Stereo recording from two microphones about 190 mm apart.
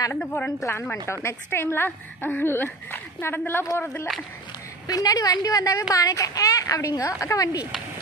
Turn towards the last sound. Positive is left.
turn(degrees=20)  # may be behind; listen again after turning